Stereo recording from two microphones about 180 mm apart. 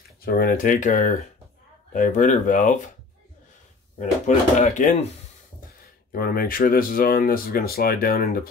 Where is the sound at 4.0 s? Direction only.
40° left (ahead or behind).